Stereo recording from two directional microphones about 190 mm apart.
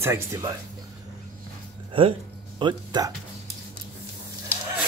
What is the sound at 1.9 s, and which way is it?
Speech, 25° right (ahead or behind).